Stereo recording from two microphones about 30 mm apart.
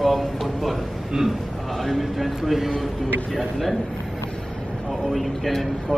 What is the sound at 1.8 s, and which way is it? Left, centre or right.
Speech, centre.